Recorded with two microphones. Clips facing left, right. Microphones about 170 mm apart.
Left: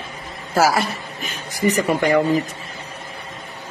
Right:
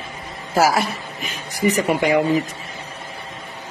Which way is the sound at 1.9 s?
10° right (ahead or behind).